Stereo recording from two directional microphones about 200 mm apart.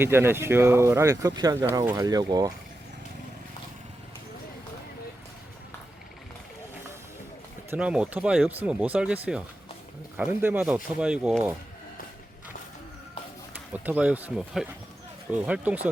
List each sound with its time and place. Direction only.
0.0 s speech: 10° right (ahead or behind)
7.7 s speech: 5° right (ahead or behind)
13.7 s speech: 5° right (ahead or behind)